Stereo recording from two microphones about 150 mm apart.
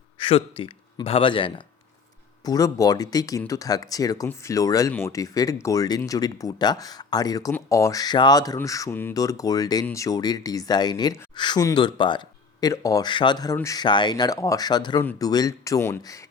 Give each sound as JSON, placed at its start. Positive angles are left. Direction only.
{"t": 0.2, "sound": "a man's voice", "side_deg": 35}